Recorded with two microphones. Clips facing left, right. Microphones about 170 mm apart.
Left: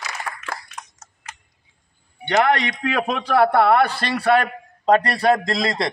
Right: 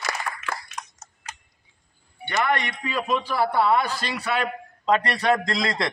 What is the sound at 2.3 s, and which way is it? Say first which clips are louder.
A man's voice: left 6 dB; 75° left (ahead or behind).